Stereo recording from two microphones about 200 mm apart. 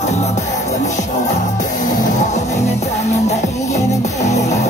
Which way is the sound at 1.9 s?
40° left (ahead or behind).